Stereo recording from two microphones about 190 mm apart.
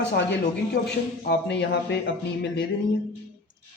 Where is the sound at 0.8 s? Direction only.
65° left (ahead or behind).